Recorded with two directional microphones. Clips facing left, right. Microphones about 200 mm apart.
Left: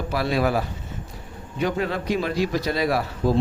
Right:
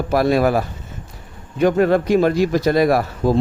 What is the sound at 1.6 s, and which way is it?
Speech, 50° right (ahead or behind).